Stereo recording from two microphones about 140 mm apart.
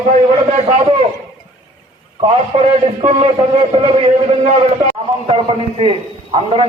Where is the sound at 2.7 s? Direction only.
50° right (ahead or behind).